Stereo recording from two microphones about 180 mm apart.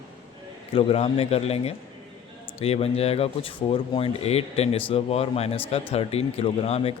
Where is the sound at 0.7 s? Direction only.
35° left (ahead or behind).